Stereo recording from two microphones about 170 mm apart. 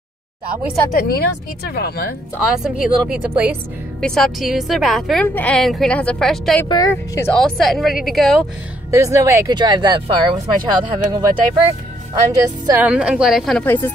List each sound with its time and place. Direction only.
0.9 s speech: 60° left (ahead or behind)
2.4 s a woman's voice: 5° right (ahead or behind)
6.7 s speech: 20° left (ahead or behind)
7.3 s a woman's voice: 5° left (ahead or behind)
8.9 s speech: 15° right (ahead or behind)
9.6 s speech: 25° right (ahead or behind)
12.8 s a woman's voice: 5° right (ahead or behind); by 13.9 s 10° left (ahead or behind)